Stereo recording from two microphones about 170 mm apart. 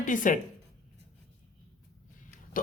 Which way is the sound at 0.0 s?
50° left (ahead or behind).